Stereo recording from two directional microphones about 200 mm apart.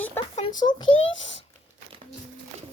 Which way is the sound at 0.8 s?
75° left (ahead or behind).